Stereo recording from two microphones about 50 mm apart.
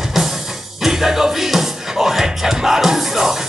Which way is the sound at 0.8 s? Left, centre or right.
Centre.